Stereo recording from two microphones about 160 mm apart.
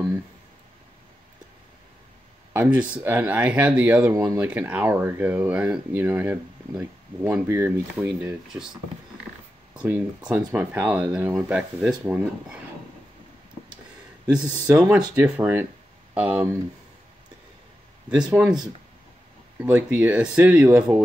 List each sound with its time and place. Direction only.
2.5 s speech: 10° right (ahead or behind)
4.1 s speech: 20° right (ahead or behind)
4.4 s speech: 10° right (ahead or behind)
9.8 s speech: 10° right (ahead or behind)
14.3 s speech: 5° right (ahead or behind)
18.2 s speech: 20° right (ahead or behind)
19.6 s speech: 10° right (ahead or behind)